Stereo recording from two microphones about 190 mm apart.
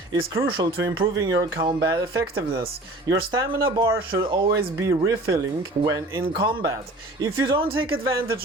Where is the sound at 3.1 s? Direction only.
55° right (ahead or behind).